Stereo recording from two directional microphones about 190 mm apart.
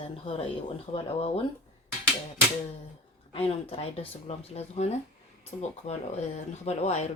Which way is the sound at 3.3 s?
30° left (ahead or behind).